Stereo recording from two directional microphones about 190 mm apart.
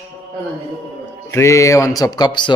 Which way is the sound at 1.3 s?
15° left (ahead or behind).